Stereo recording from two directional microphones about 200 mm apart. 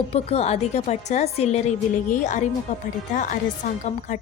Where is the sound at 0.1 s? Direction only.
30° left (ahead or behind).